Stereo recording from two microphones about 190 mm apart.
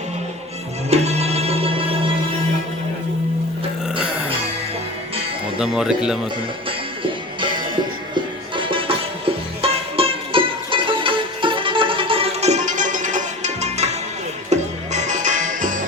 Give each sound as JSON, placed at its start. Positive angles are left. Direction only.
{"t": 0.9, "sound": "music", "side_deg": -35}
{"t": 5.5, "sound": "speech", "side_deg": -5}
{"t": 8.1, "sound": "music", "side_deg": -25}